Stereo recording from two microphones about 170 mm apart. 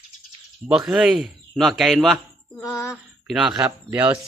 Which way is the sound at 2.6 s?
20° left (ahead or behind).